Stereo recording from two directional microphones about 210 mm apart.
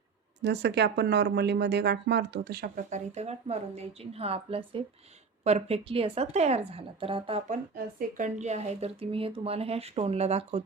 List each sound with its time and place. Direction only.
0.4 s speech: 55° right (ahead or behind); by 7.6 s 30° right (ahead or behind)
7.9 s speech: 40° right (ahead or behind)